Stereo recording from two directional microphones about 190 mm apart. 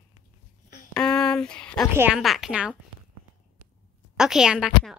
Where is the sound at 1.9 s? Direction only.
10° right (ahead or behind).